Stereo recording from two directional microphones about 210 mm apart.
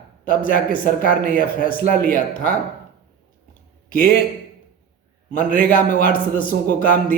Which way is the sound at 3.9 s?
45° left (ahead or behind).